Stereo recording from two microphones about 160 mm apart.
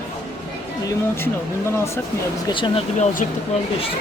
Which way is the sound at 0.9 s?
15° left (ahead or behind).